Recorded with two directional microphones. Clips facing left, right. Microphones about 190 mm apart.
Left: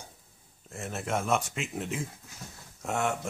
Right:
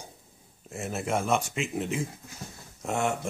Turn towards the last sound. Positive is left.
turn(degrees=5)  # may be behind; listen again after turning